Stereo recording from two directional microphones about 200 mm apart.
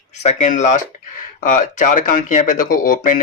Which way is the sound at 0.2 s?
35° left (ahead or behind).